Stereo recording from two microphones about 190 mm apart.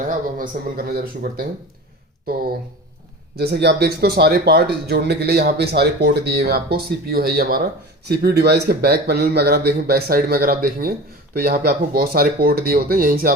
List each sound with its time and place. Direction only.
0.0 s speech: 45° right (ahead or behind)
3.3 s speech: 60° right (ahead or behind)